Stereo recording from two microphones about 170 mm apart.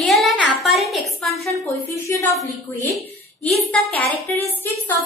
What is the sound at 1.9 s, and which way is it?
Speech, 15° left (ahead or behind).